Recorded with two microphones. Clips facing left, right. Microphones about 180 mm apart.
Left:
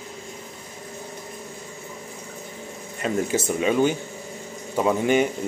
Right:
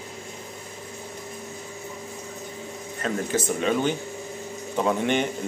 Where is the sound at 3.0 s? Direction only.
10° left (ahead or behind).